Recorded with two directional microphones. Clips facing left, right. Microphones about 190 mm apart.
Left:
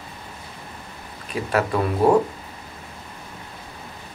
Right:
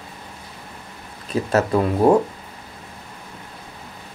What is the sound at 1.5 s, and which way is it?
Speech, 25° right (ahead or behind).